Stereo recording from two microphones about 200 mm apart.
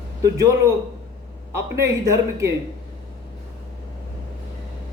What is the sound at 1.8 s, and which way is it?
Speech, 15° right (ahead or behind).